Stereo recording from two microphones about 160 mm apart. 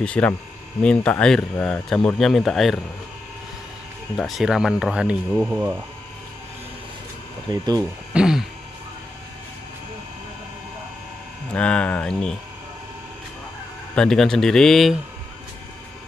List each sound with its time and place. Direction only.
0.0 s speech: 10° left (ahead or behind)
4.2 s speech: centre (ahead or behind)
7.4 s speech: 25° right (ahead or behind)
8.1 s speech: 5° right (ahead or behind)
11.5 s speech: 5° left (ahead or behind)
13.9 s speech: 5° left (ahead or behind)